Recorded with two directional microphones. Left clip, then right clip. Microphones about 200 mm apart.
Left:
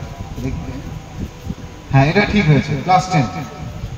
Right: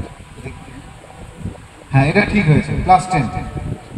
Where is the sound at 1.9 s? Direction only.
55° right (ahead or behind).